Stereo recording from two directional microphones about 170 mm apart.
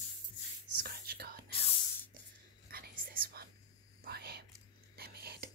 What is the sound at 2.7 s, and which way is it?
Whispering, 60° right (ahead or behind).